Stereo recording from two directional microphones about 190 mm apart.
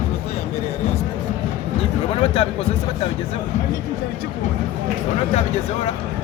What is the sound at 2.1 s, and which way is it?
Speech, 30° left (ahead or behind).